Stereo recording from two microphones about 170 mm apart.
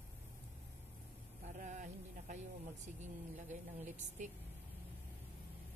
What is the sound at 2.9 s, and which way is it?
A woman's voice, 45° right (ahead or behind).